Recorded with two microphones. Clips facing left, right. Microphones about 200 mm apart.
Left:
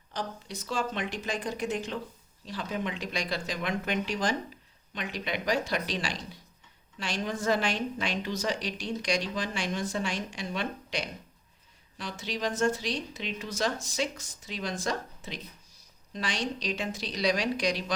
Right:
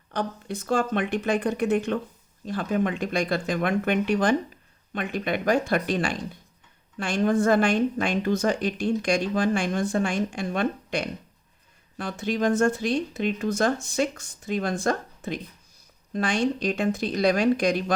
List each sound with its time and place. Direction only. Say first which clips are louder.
0.1 s speech: right 7 dB; 55° right (ahead or behind)